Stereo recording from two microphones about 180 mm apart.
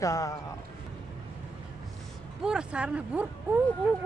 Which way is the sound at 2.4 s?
5° right (ahead or behind).